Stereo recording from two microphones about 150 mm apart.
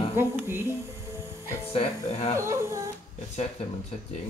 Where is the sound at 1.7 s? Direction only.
45° left (ahead or behind).